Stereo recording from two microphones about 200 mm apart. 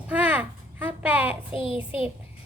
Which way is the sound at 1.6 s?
25° left (ahead or behind).